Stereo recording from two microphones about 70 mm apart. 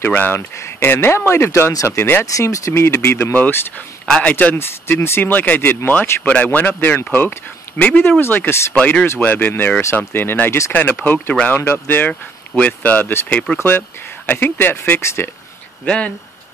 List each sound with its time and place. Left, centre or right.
0.0 s speech: left
2.3 s speech: left
3.3 s speech: left
4.0 s speech: centre
4.6 s speech: left
8.7 s speech: centre
13.3 s speech: centre
13.6 s speech: left
15.8 s speech: centre